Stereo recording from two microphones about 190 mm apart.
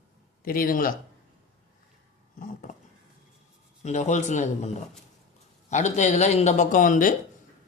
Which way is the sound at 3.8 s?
40° left (ahead or behind).